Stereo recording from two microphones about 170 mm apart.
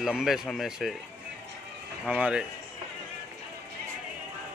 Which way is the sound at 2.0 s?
5° right (ahead or behind).